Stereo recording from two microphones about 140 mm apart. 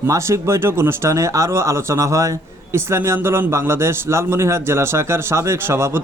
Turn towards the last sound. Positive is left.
turn(degrees=-15)  # may be behind; listen again after turning